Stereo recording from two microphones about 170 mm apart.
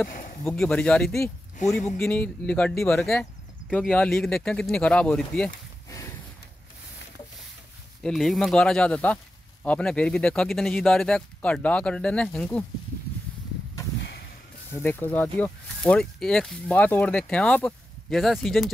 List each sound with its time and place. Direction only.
0.5 s speech: 5° left (ahead or behind)
5.9 s a sound: 20° left (ahead or behind)
8.0 s speech: centre (ahead or behind)
14.7 s speech: 10° left (ahead or behind)